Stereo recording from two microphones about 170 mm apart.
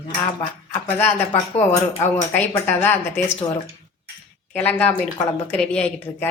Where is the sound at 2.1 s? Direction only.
10° left (ahead or behind).